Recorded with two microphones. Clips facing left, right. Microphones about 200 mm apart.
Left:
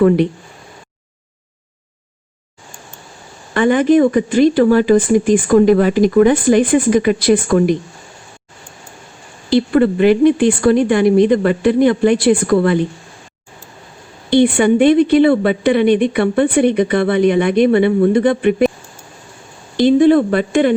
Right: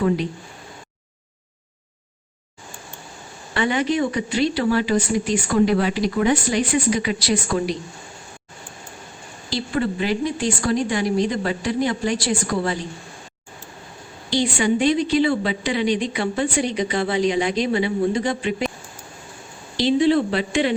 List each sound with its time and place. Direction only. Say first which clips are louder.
3.5 s speech: left 10 dB; 50° left (ahead or behind)
9.5 s a woman's voice: left 11 dB; 55° left (ahead or behind)
14.3 s a woman's voice: left 9 dB; 60° left (ahead or behind)
19.7 s speech: left 7 dB; 50° left (ahead or behind)